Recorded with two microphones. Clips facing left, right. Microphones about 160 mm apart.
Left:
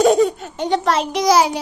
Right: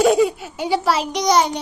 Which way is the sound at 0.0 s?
5° right (ahead or behind).